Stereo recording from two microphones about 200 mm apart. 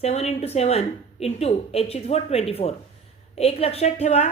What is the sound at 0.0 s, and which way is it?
A woman's voice, 30° left (ahead or behind).